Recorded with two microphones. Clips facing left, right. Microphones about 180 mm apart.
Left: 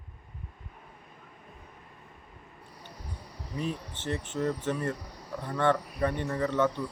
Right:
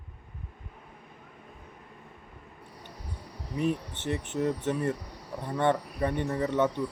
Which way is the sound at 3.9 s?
20° right (ahead or behind).